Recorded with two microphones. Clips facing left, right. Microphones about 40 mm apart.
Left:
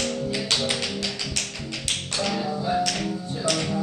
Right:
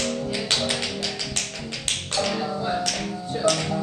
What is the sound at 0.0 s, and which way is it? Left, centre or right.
Tap, centre.